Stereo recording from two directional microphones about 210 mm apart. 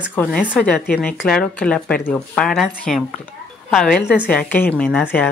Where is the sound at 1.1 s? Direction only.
5° left (ahead or behind).